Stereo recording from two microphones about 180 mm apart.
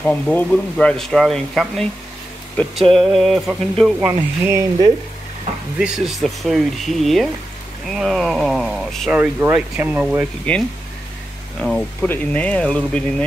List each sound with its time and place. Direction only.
0.0 s speech: 10° left (ahead or behind)
2.9 s speech: centre (ahead or behind)
4.5 s speech: 20° right (ahead or behind)
5.8 s speech: 5° right (ahead or behind)
9.2 s speech: 10° right (ahead or behind)
10.5 s speech: 5° left (ahead or behind)